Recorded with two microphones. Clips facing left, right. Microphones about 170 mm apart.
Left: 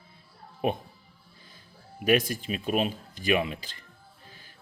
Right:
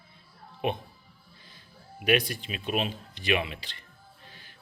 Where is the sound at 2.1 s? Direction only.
45° left (ahead or behind).